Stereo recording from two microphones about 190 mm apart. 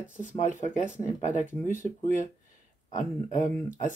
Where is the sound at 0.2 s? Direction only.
40° left (ahead or behind).